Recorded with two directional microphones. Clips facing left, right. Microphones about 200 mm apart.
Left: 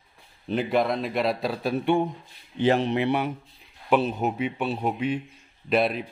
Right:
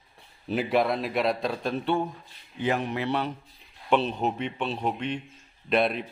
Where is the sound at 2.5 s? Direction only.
30° left (ahead or behind).